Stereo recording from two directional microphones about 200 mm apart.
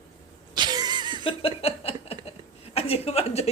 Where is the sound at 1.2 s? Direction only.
30° left (ahead or behind).